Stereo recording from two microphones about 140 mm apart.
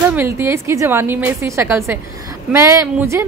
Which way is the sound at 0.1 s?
15° right (ahead or behind).